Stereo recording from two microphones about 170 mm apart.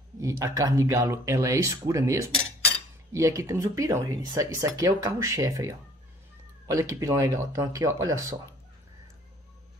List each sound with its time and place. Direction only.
0.2 s speech: 20° right (ahead or behind)